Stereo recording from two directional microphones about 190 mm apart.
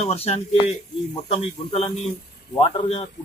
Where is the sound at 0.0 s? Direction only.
35° left (ahead or behind).